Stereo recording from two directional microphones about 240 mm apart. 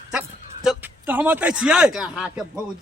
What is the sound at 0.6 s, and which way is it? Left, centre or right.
Speech, centre.